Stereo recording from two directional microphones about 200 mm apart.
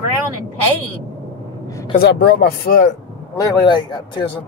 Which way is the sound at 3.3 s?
25° left (ahead or behind).